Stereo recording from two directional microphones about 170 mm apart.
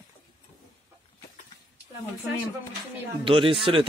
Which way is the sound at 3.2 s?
30° right (ahead or behind).